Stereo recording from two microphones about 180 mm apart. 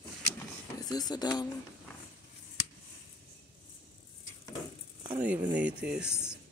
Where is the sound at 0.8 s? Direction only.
20° left (ahead or behind).